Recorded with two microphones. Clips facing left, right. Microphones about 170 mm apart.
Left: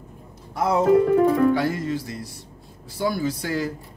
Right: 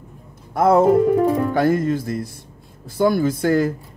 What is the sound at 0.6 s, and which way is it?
Speech, 50° right (ahead or behind).